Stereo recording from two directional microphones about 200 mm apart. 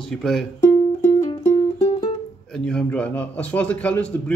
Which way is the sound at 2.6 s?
5° left (ahead or behind).